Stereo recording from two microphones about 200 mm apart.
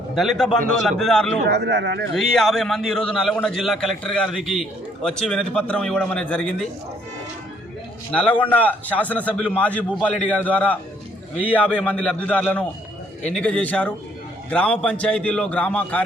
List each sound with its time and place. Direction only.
0.2 s a man's voice: centre (ahead or behind)
1.5 s speech: 55° right (ahead or behind)
2.1 s a man's voice: centre (ahead or behind)
8.1 s a man's voice: 5° left (ahead or behind)